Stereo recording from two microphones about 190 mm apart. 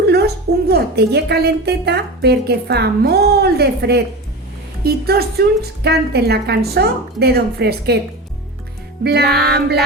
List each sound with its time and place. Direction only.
0.0 s a sound: 60° right (ahead or behind)
0.7 s a woman's voice: 60° right (ahead or behind)
9.0 s a woman's voice: 60° right (ahead or behind)